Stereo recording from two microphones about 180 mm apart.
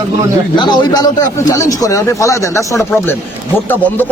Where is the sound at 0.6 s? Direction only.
25° left (ahead or behind).